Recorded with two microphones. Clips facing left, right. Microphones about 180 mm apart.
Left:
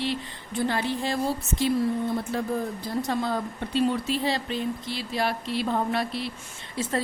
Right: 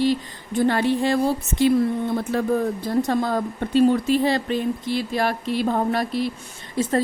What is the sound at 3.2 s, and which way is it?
A woman's voice, 50° right (ahead or behind).